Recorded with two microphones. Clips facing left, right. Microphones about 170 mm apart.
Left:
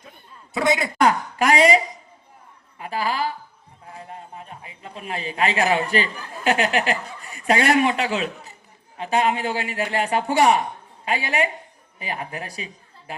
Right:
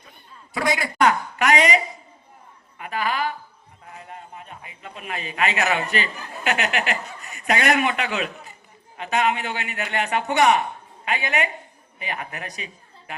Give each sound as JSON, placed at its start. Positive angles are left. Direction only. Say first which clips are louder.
{"t": 0.5, "sound": "a man's voice", "louder": "left 3 dB", "side_deg": 25}